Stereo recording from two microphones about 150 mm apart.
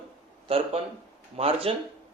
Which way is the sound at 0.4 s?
40° right (ahead or behind).